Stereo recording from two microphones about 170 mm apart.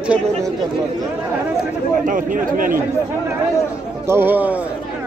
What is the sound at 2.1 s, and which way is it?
Speech, 50° right (ahead or behind).